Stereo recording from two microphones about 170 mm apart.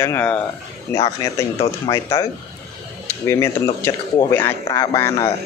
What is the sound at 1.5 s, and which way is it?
Speech, 35° left (ahead or behind).